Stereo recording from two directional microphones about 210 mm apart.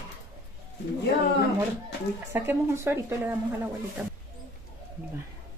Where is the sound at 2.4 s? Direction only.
10° right (ahead or behind).